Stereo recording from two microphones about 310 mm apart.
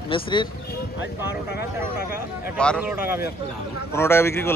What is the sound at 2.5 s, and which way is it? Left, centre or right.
A man's voice, centre.